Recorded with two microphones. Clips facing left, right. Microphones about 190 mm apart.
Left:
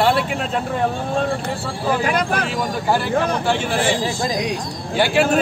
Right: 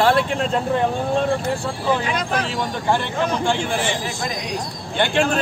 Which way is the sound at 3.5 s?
5° left (ahead or behind).